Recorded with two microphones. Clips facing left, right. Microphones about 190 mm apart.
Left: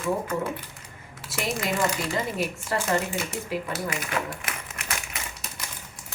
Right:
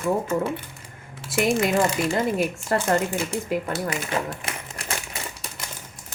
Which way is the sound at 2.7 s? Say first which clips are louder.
Right 4 dB; 50° right (ahead or behind).